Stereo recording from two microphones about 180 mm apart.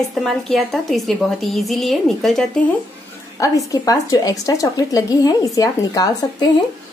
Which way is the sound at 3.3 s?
20° left (ahead or behind).